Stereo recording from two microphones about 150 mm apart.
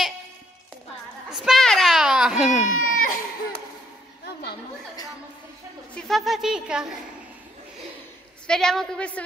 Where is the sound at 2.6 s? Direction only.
65° left (ahead or behind).